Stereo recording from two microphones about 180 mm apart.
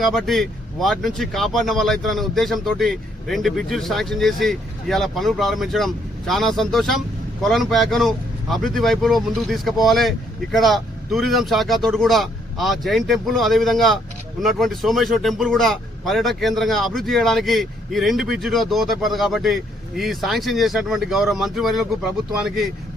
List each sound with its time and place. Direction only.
0.0 s speech: centre (ahead or behind)